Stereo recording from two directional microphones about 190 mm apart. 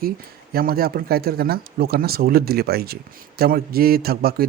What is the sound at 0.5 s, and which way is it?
Speech, 50° right (ahead or behind).